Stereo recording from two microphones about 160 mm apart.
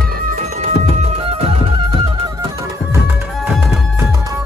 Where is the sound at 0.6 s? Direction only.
40° right (ahead or behind).